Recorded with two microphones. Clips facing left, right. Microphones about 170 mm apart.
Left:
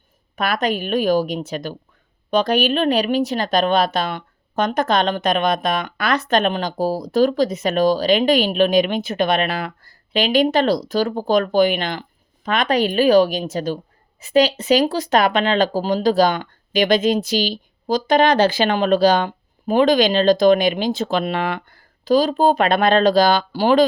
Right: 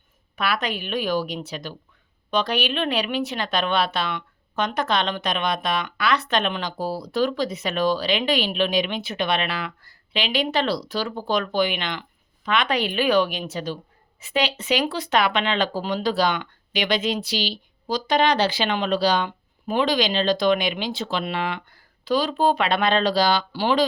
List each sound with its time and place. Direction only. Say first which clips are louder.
0.3 s a woman's voice: left 5 dB; 45° left (ahead or behind)